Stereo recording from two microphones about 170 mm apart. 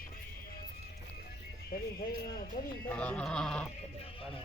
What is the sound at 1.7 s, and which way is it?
Speech, 60° left (ahead or behind).